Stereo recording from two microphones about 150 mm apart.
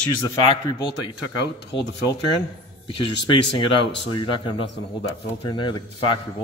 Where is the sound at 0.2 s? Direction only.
35° left (ahead or behind).